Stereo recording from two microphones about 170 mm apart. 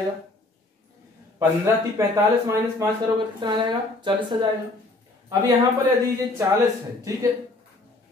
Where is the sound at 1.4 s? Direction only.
15° right (ahead or behind).